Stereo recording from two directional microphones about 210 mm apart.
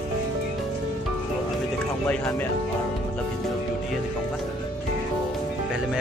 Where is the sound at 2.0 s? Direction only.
5° left (ahead or behind).